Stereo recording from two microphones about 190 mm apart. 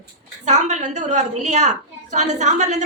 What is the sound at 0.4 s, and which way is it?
A woman's voice, 40° right (ahead or behind).